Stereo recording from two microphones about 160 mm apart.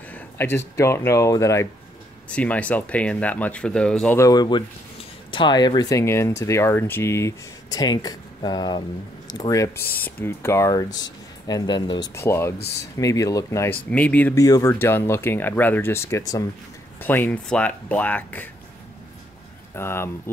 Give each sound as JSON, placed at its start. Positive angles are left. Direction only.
{"t": 0.1, "sound": "speech", "side_deg": 15}
{"t": 2.2, "sound": "speech", "side_deg": 10}
{"t": 4.2, "sound": "speech", "side_deg": 25}
{"t": 13.8, "sound": "speech", "side_deg": 10}
{"t": 19.7, "sound": "speech", "side_deg": 15}